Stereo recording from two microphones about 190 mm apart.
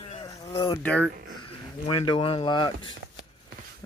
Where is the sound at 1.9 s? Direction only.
25° left (ahead or behind).